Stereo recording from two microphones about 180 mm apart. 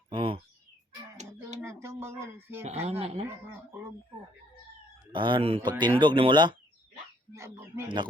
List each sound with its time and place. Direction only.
0.1 s a sound: 30° right (ahead or behind)
1.6 s a sound: 15° right (ahead or behind)
2.8 s speech: 35° right (ahead or behind)
3.2 s speech: 10° right (ahead or behind)
5.1 s speech: 25° right (ahead or behind)
7.3 s bird: 15° right (ahead or behind)